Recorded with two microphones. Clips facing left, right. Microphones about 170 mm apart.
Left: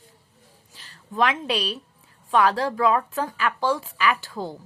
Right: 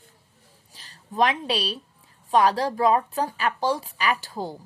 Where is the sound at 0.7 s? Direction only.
40° right (ahead or behind).